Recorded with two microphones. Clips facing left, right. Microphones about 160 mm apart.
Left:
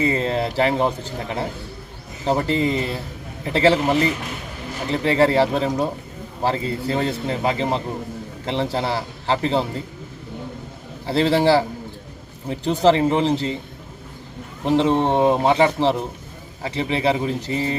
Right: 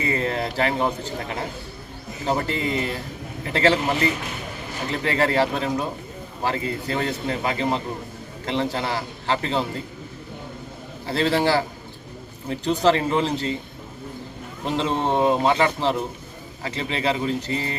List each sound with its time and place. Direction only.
0.0 s a man's voice: 25° left (ahead or behind)
11.0 s a man's voice: 25° left (ahead or behind)
14.6 s a man's voice: 25° left (ahead or behind)